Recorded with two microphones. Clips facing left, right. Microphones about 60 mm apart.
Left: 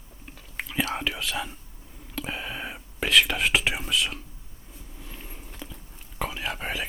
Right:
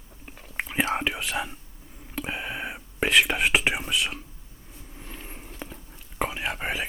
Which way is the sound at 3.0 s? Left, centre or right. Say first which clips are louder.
Right 1 dB; centre.